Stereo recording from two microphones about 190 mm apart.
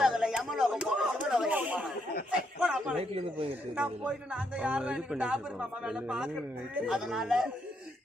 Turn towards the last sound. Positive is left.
turn(degrees=-5)  # may be behind; listen again after turning